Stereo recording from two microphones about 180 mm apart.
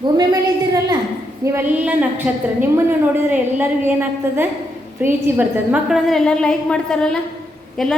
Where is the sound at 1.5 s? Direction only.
10° right (ahead or behind).